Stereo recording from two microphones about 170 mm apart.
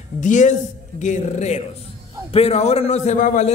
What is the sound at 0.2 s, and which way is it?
A woman's voice, 45° left (ahead or behind).